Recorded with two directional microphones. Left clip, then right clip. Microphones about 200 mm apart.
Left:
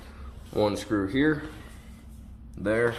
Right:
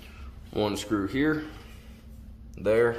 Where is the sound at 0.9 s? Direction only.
5° right (ahead or behind).